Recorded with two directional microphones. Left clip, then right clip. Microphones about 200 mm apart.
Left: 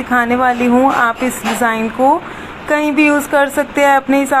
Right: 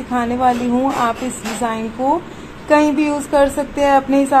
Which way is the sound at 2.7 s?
15° left (ahead or behind).